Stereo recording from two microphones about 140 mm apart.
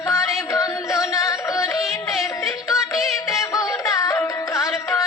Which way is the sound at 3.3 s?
20° left (ahead or behind).